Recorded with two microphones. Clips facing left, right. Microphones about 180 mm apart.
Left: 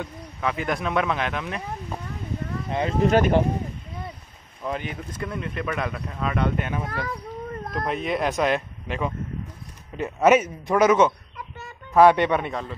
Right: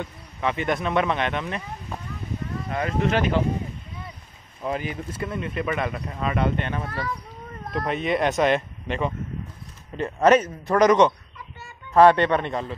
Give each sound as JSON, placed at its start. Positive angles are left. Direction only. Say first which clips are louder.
{"t": 0.0, "sound": "speech", "louder": "right 1 dB", "side_deg": 0}
{"t": 2.7, "sound": "speech", "louder": "left 4 dB", "side_deg": 25}
{"t": 4.6, "sound": "speech", "louder": "right 2 dB", "side_deg": -5}
{"t": 7.8, "sound": "a man's voice", "louder": "right 2 dB", "side_deg": 0}